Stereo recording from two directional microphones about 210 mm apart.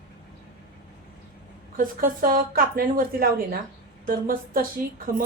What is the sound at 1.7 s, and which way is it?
A woman's voice, 40° right (ahead or behind).